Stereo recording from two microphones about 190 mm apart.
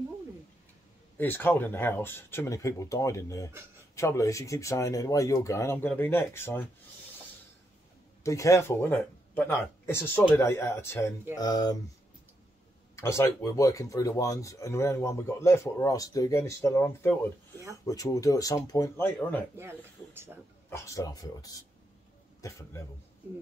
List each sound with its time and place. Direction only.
1.1 s speech: 10° left (ahead or behind)
8.2 s speech: 15° left (ahead or behind)
12.9 s speech: 15° left (ahead or behind)
19.5 s speech: 15° right (ahead or behind)
20.7 s speech: 15° left (ahead or behind)